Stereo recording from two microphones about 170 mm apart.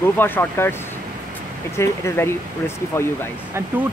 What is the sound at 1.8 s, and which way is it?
Speech, 15° left (ahead or behind).